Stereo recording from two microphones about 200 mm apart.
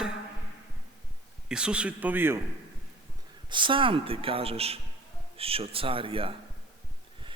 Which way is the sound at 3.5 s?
25° right (ahead or behind).